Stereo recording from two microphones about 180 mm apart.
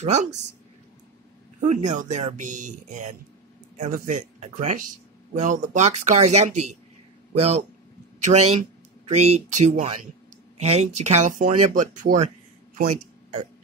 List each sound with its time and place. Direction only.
0.0 s speech: 40° right (ahead or behind)
1.6 s speech: 40° right (ahead or behind)
8.2 s speech: 40° right (ahead or behind)
12.7 s a sound: 45° right (ahead or behind)